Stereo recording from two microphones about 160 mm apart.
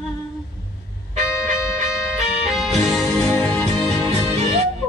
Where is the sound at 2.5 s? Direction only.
Centre (ahead or behind).